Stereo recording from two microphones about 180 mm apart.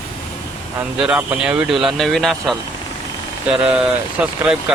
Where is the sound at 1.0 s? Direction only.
5° right (ahead or behind).